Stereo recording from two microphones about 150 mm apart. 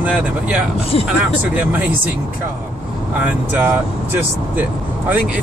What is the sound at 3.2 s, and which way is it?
Speech, 15° right (ahead or behind).